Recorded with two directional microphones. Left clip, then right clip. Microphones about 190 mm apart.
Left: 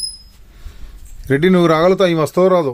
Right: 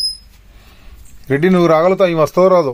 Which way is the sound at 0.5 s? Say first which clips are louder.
Right 2 dB; 50° left (ahead or behind).